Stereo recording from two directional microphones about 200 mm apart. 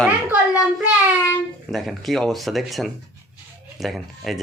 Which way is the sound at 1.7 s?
Centre (ahead or behind).